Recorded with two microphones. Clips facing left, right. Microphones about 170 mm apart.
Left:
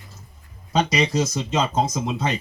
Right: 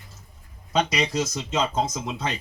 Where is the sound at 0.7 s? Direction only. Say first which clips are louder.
Left 3 dB; 35° left (ahead or behind).